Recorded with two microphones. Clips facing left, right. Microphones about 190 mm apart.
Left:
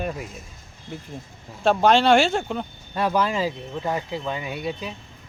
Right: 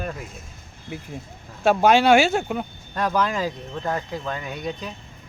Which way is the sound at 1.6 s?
5° right (ahead or behind).